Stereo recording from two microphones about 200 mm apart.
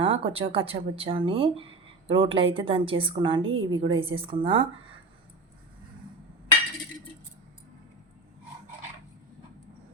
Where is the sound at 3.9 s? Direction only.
25° right (ahead or behind).